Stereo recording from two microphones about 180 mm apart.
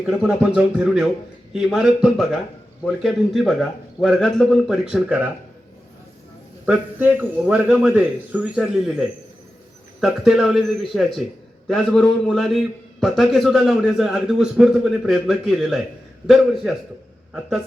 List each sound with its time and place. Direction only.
0.0 s a man's voice: 5° right (ahead or behind)
6.7 s a man's voice: 10° right (ahead or behind)